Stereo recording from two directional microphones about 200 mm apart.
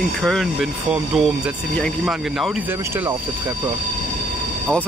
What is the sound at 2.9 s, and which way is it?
Speech, 10° right (ahead or behind).